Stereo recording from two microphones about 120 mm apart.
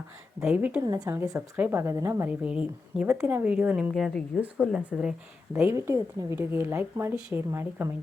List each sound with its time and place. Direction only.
0.4 s speech: 10° right (ahead or behind)
0.8 s a woman's voice: 30° right (ahead or behind)
2.4 s speech: 10° right (ahead or behind)
3.9 s speech: centre (ahead or behind)
5.5 s a woman's voice: 20° right (ahead or behind)